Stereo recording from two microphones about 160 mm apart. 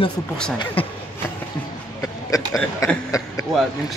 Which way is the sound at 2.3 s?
20° left (ahead or behind).